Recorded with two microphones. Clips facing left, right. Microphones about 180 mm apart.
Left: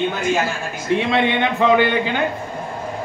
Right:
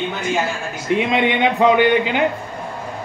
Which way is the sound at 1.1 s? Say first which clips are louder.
Right 2 dB; 15° right (ahead or behind).